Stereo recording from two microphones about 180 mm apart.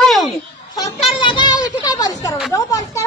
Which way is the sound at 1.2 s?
25° left (ahead or behind).